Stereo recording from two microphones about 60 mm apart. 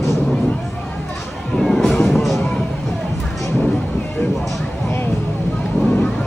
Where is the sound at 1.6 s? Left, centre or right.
Centre.